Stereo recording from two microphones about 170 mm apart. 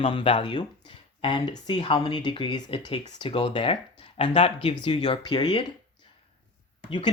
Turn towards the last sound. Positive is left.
turn(degrees=30)  # may be behind; listen again after turning